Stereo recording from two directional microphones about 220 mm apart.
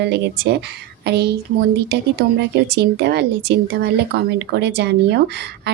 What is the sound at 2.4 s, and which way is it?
A woman's voice, 50° right (ahead or behind).